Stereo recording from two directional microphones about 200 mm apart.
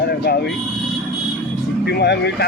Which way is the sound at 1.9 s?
55° left (ahead or behind).